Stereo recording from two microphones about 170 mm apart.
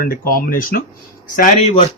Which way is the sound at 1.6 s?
35° left (ahead or behind).